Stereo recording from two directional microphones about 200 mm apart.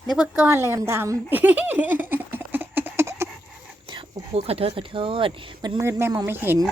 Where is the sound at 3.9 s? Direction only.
25° right (ahead or behind).